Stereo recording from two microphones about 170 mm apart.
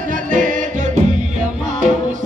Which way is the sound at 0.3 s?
50° right (ahead or behind).